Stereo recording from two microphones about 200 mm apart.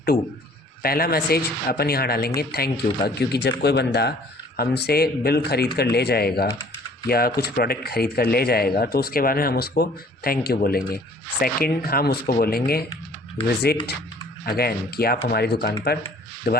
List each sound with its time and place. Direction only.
0.8 s speech: 50° left (ahead or behind)